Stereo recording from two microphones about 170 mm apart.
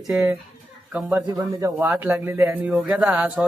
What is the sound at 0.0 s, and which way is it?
Speech, 5° right (ahead or behind).